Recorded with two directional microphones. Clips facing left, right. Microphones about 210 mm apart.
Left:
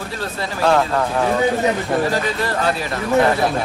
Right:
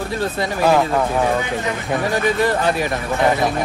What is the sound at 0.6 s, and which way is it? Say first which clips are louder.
Speech: even; 5° right (ahead or behind).